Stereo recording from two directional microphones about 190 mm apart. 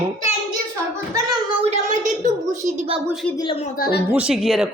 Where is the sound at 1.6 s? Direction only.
40° right (ahead or behind).